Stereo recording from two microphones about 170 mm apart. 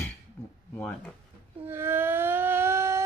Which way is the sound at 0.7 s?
10° left (ahead or behind).